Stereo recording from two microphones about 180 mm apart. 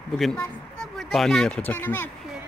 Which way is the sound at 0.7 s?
Centre (ahead or behind).